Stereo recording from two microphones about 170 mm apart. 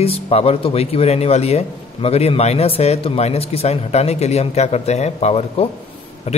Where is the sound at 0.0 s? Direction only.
35° left (ahead or behind).